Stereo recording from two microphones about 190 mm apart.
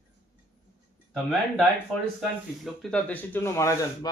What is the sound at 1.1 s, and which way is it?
Speech, centre (ahead or behind).